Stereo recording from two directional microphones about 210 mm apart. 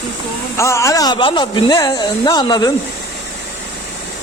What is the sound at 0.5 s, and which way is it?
Speech, 15° left (ahead or behind).